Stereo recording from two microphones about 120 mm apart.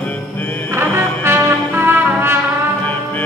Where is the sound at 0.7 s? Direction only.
20° right (ahead or behind).